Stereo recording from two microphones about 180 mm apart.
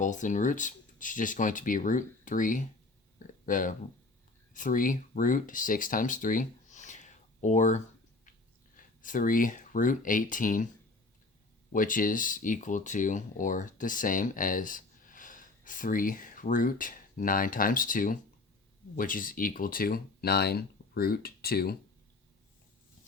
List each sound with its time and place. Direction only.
0.0 s speech: 45° left (ahead or behind)
11.7 s speech: 50° left (ahead or behind)